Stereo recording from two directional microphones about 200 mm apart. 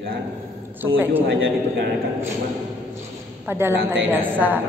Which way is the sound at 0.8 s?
10° right (ahead or behind).